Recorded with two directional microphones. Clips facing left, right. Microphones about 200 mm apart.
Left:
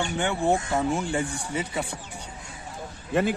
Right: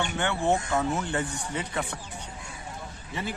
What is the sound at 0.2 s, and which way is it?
Speech, 15° left (ahead or behind).